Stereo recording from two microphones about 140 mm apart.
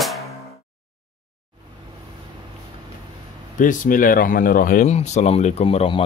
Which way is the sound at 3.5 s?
70° left (ahead or behind).